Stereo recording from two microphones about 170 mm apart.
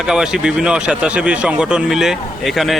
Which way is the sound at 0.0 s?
5° right (ahead or behind).